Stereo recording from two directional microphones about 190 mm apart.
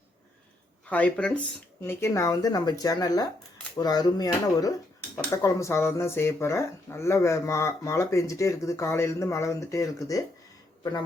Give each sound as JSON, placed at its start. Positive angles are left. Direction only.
{"t": 0.9, "sound": "speech", "side_deg": 10}